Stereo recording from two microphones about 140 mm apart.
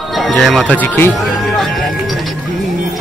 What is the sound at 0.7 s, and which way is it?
Speech, 15° left (ahead or behind).